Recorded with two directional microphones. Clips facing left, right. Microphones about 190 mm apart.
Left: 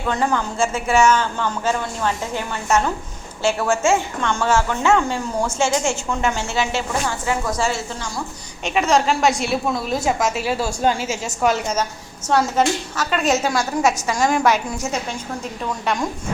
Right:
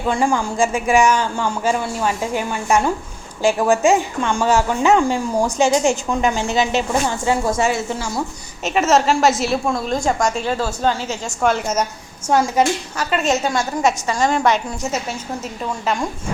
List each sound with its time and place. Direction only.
0.1 s a woman's voice: 10° right (ahead or behind)
8.6 s a woman's voice: 5° right (ahead or behind)
12.3 s a woman's voice: 10° right (ahead or behind)
13.1 s a woman's voice: centre (ahead or behind)